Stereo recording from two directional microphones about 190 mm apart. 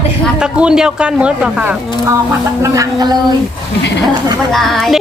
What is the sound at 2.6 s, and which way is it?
Speech, 20° right (ahead or behind).